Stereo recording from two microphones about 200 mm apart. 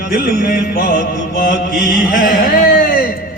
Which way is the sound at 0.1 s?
50° left (ahead or behind).